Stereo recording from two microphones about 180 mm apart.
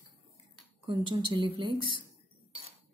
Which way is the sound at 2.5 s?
30° right (ahead or behind).